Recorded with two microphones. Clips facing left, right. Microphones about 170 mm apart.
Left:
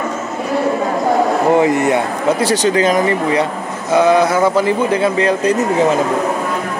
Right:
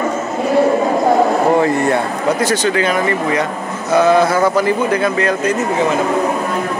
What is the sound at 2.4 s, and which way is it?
Speech, 35° left (ahead or behind).